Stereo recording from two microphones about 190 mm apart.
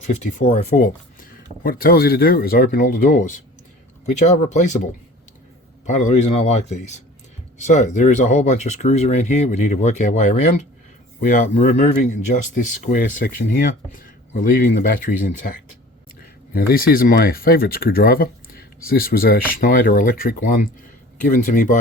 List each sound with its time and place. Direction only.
0.0 s speech: 35° left (ahead or behind)
5.8 s speech: 40° left (ahead or behind)